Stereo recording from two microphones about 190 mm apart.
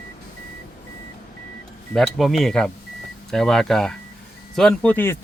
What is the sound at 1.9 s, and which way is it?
A man's voice, centre (ahead or behind).